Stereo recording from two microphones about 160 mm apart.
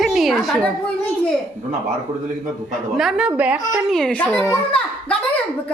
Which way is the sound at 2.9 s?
Centre (ahead or behind).